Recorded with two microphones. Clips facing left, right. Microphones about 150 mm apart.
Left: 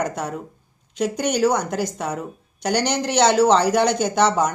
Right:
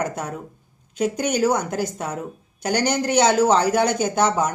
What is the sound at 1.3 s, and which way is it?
Speech, 5° right (ahead or behind).